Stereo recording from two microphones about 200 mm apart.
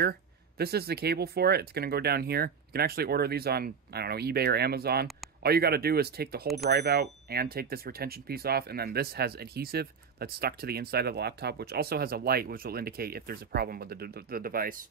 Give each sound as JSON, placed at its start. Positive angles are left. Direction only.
{"t": 0.6, "sound": "speech", "side_deg": -50}